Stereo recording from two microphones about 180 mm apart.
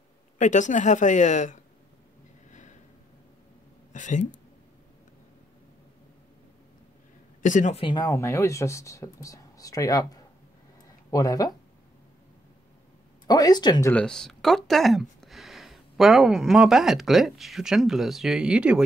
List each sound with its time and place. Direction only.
0.4 s a woman's voice: 45° left (ahead or behind)
3.9 s a woman's voice: 45° left (ahead or behind)
7.4 s a woman's voice: 45° left (ahead or behind)
7.8 s speech: 20° left (ahead or behind)
13.3 s speech: 20° left (ahead or behind)
13.9 s speech: 5° left (ahead or behind)